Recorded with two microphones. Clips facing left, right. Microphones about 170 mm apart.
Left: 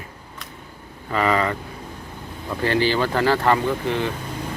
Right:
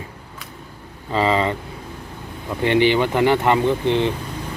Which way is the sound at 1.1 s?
25° right (ahead or behind).